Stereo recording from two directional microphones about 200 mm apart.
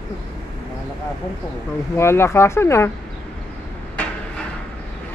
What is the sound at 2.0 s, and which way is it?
Speech, 10° left (ahead or behind).